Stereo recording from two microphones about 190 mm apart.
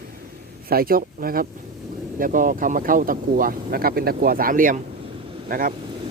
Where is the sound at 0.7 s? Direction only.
50° right (ahead or behind).